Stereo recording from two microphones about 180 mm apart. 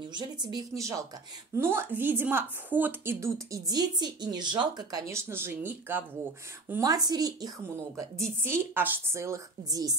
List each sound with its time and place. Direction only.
0.1 s a woman's voice: 25° right (ahead or behind)